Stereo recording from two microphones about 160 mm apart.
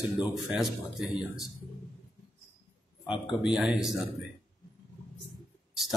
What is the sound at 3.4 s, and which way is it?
Speech, 5° right (ahead or behind).